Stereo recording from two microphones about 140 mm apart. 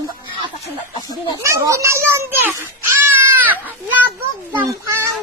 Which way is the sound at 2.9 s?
15° right (ahead or behind).